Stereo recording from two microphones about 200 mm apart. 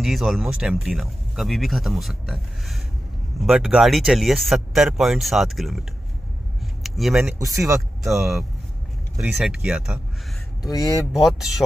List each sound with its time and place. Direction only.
0.0 s speech: centre (ahead or behind)
7.3 s speech: 15° right (ahead or behind)
8.0 s speech: centre (ahead or behind)
10.6 s speech: 20° left (ahead or behind)
11.1 s speech: centre (ahead or behind)